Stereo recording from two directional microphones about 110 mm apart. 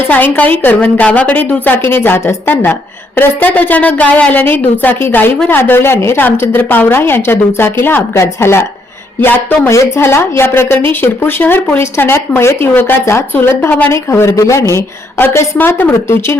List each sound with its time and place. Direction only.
0.1 s a woman's voice: 15° left (ahead or behind)